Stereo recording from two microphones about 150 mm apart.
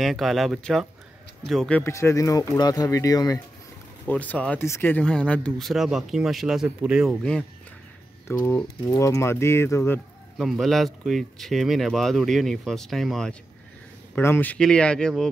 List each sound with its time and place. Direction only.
0.0 s speech: centre (ahead or behind); by 3.3 s 25° left (ahead or behind)
4.1 s speech: 10° left (ahead or behind)
8.3 s speech: 15° left (ahead or behind)
10.3 s speech: centre (ahead or behind)
14.1 s speech: 15° left (ahead or behind)